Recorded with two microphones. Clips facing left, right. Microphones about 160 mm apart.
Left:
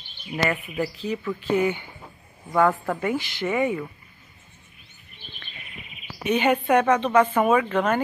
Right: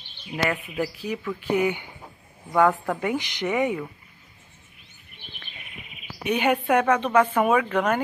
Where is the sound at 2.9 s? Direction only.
15° right (ahead or behind).